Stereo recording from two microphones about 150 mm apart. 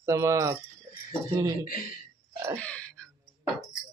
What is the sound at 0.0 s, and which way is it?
Speech, 20° right (ahead or behind).